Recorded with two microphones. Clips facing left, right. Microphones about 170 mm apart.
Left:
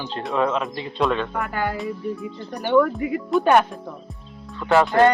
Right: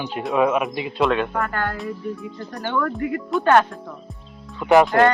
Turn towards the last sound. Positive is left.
turn(degrees=-15)  # may be behind; listen again after turning